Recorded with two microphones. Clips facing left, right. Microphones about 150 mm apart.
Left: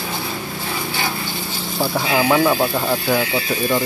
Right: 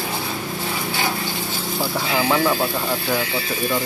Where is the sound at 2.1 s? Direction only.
10° left (ahead or behind).